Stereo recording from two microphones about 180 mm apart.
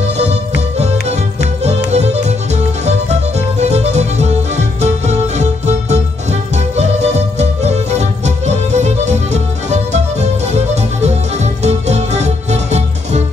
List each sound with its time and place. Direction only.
0.7 s music: 35° right (ahead or behind)